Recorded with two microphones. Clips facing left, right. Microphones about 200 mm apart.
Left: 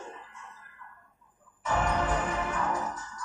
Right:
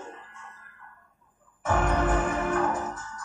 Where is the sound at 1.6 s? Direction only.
50° right (ahead or behind).